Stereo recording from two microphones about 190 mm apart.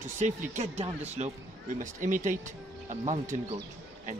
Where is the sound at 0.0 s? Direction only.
40° right (ahead or behind).